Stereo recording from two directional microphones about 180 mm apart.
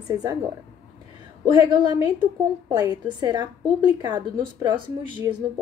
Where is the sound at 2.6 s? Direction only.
20° right (ahead or behind).